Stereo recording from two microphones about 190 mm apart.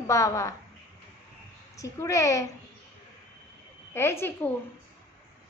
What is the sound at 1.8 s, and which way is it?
Speech, 15° left (ahead or behind).